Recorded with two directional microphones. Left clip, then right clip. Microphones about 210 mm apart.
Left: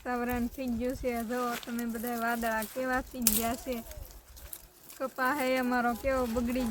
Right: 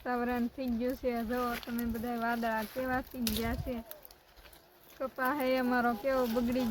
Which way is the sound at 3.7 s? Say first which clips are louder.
Left 3 dB; 75° left (ahead or behind).